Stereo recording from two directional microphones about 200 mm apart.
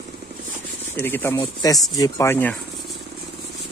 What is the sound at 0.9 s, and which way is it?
Speech, 10° left (ahead or behind).